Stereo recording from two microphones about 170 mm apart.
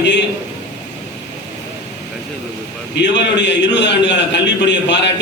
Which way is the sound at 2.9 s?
90° left.